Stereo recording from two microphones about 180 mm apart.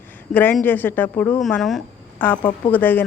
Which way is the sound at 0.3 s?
10° left (ahead or behind).